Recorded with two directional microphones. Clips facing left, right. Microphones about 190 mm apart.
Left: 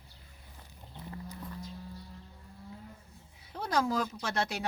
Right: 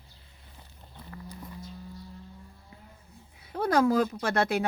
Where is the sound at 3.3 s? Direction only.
60° right (ahead or behind).